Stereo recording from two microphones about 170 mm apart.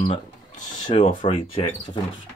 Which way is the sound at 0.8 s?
45° left (ahead or behind).